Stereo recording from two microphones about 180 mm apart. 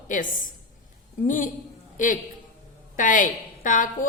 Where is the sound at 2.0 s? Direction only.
45° left (ahead or behind).